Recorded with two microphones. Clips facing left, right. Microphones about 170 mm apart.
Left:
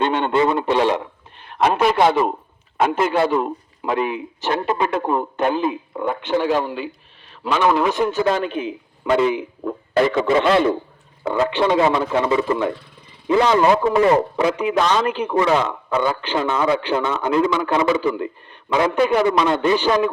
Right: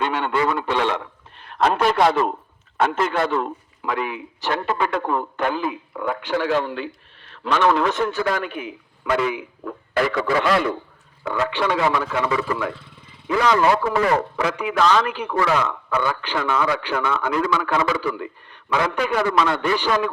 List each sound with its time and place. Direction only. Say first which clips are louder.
0.0 s speech: left 4 dB; 25° left (ahead or behind)
1.4 s a sound: left 2 dB; 5° left (ahead or behind)
2.0 s a man's voice: left 2 dB; 5° left (ahead or behind); by 6.6 s 20° left (ahead or behind)
6.6 s a man's voice: left 1 dB; 10° left (ahead or behind)